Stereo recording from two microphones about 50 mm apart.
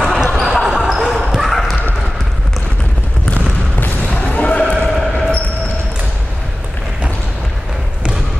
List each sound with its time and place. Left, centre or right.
0.0 s basketball bounce: centre
4.1 s basketball bounce: left
4.8 s a sound: centre